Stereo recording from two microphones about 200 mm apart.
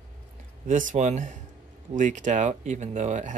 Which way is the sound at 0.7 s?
40° right (ahead or behind).